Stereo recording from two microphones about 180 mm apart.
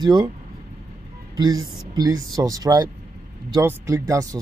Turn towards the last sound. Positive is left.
turn(degrees=-20)  # may be behind; listen again after turning